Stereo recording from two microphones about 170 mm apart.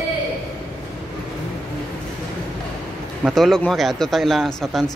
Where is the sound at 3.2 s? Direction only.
Centre (ahead or behind).